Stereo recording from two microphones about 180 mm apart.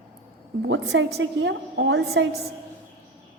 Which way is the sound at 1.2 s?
80° right.